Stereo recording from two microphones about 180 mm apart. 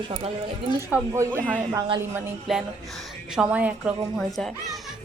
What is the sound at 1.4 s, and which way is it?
A woman's voice, 5° left (ahead or behind).